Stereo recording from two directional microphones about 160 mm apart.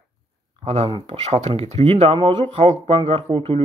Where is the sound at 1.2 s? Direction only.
45° right (ahead or behind).